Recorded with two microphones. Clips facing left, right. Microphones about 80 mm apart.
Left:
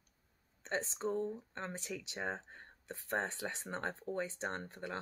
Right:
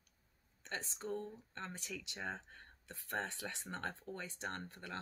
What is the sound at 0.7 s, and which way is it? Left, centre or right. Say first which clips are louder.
Speech: left 6 dB; left.